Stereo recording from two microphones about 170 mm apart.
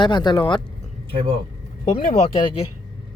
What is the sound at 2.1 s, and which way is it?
Speech, 35° left (ahead or behind).